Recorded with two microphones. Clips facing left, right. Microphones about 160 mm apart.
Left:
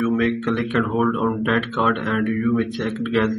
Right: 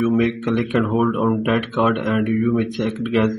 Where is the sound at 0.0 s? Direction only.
15° right (ahead or behind).